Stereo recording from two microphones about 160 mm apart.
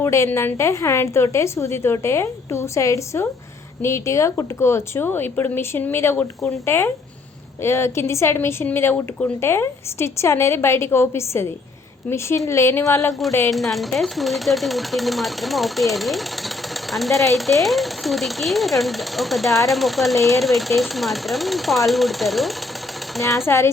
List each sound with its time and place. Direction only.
0.0 s a woman's voice: 15° left (ahead or behind)
13.5 s speech: centre (ahead or behind)
23.5 s a woman's voice: 15° left (ahead or behind)